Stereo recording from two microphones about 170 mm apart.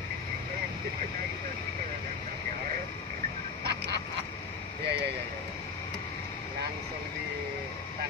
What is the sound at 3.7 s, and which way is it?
Frog, 75° right (ahead or behind).